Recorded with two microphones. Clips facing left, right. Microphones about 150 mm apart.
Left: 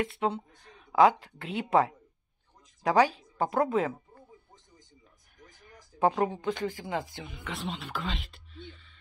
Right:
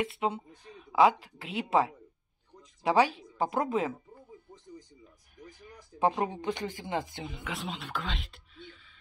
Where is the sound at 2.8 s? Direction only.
10° right (ahead or behind).